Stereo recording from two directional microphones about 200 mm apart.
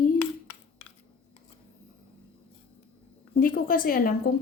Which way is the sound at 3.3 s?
45° left (ahead or behind).